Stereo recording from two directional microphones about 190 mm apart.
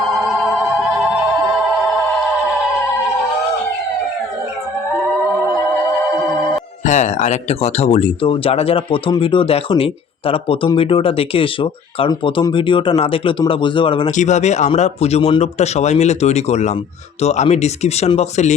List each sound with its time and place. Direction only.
0.3 s music: centre (ahead or behind)
1.7 s a sound: centre (ahead or behind)
6.8 s speech: 40° left (ahead or behind)
14.2 s speech: 35° left (ahead or behind)